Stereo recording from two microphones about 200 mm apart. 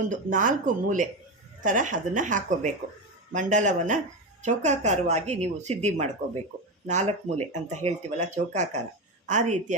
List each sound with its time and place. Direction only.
0.1 s speech: 40° right (ahead or behind)